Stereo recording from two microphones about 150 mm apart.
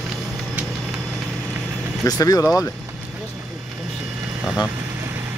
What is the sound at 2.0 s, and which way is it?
Speech, 25° left (ahead or behind).